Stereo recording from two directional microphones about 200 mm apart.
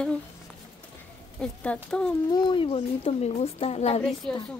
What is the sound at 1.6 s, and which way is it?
Speech, 5° left (ahead or behind).